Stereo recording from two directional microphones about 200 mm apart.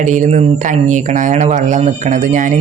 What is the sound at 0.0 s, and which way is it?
Speech, 40° right (ahead or behind).